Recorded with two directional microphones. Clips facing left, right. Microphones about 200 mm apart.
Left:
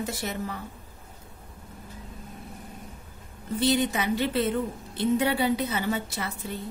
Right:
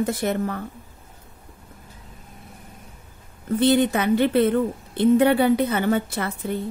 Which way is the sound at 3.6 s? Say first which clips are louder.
Right 6 dB; 55° right (ahead or behind).